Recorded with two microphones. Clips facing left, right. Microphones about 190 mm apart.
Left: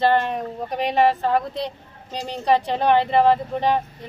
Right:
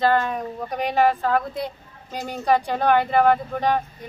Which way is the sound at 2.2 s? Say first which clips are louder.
Left 1 dB; 25° left (ahead or behind).